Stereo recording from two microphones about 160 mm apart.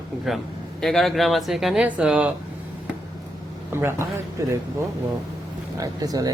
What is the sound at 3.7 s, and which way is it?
Speech, 15° right (ahead or behind).